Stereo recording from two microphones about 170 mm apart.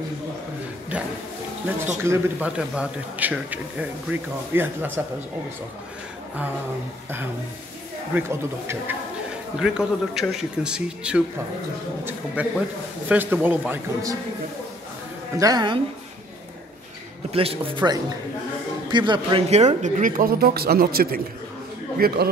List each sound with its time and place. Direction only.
0.9 s speech: 5° right (ahead or behind)
8.1 s speech: 15° right (ahead or behind)
9.6 s speech: 5° right (ahead or behind)
15.3 s a man's voice: 20° right (ahead or behind)
17.3 s a man's voice: 35° right (ahead or behind)
19.4 s speech: 40° right (ahead or behind); by 22.3 s 65° right (ahead or behind)